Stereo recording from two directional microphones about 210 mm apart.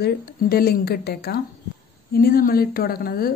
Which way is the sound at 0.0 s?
45° left (ahead or behind).